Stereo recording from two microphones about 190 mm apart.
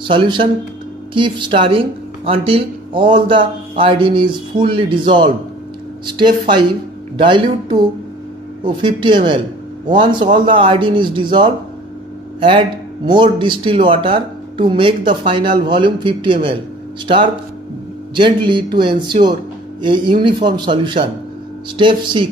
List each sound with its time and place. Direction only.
0.0 s speech: 25° right (ahead or behind)
18.1 s speech: 25° right (ahead or behind)